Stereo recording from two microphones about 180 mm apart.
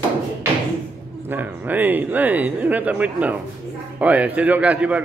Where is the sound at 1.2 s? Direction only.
10° right (ahead or behind).